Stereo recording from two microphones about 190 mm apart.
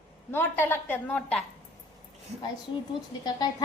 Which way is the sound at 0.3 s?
10° left (ahead or behind).